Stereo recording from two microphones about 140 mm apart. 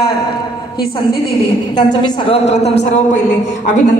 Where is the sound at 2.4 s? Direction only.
50° left (ahead or behind).